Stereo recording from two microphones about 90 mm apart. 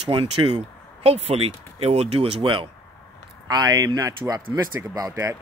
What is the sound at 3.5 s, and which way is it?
Speech, 45° right (ahead or behind).